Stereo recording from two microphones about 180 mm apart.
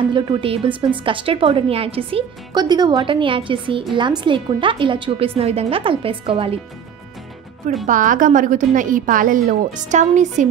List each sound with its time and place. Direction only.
0.1 s a woman's voice: 25° right (ahead or behind)
7.8 s a woman's voice: 45° right (ahead or behind)